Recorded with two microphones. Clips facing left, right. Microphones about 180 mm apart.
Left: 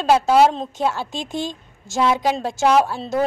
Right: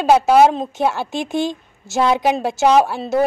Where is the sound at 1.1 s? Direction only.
70° right (ahead or behind).